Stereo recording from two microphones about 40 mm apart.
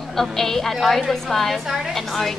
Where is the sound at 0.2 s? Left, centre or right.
Centre.